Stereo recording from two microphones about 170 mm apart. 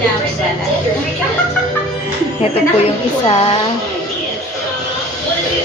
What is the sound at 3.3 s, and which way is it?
Speech, 35° left (ahead or behind).